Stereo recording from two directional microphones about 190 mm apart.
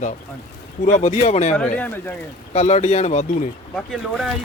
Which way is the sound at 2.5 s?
35° left (ahead or behind).